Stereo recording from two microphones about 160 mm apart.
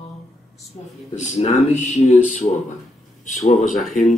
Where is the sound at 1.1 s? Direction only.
50° left (ahead or behind).